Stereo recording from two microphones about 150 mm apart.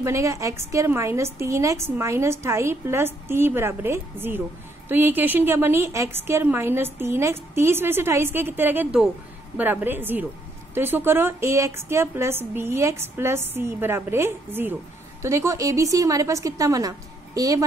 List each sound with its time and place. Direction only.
0.0 s a woman's voice: 20° right (ahead or behind)